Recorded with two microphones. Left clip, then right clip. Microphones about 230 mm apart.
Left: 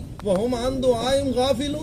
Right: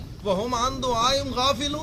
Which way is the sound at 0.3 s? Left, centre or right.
Centre.